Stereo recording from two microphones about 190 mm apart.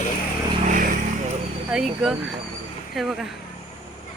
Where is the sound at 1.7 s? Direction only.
Centre (ahead or behind).